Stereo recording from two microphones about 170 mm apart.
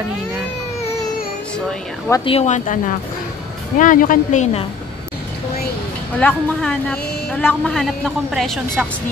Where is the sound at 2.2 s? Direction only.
40° left (ahead or behind).